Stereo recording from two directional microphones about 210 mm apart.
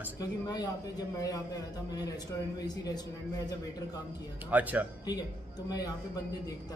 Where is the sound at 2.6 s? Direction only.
20° left (ahead or behind).